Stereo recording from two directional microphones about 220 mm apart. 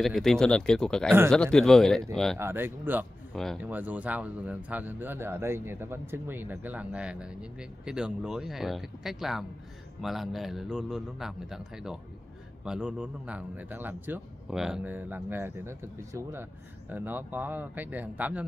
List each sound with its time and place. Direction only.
0.0 s a man's voice: centre (ahead or behind)
2.3 s a man's voice: 10° right (ahead or behind)